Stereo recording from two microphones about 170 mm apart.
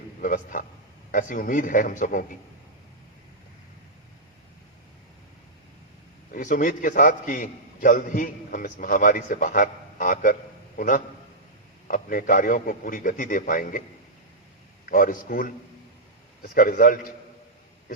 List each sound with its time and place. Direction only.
0.2 s a man's voice: 50° left (ahead or behind)
6.3 s a man's voice: 50° left (ahead or behind)
14.8 s a man's voice: 55° left (ahead or behind)